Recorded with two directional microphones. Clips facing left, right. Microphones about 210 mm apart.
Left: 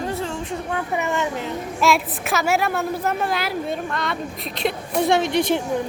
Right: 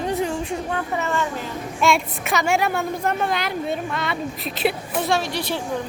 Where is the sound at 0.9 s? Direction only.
15° left (ahead or behind).